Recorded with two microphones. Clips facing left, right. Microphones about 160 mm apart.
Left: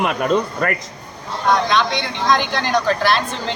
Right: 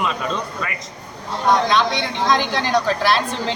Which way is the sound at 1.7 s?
5° right (ahead or behind).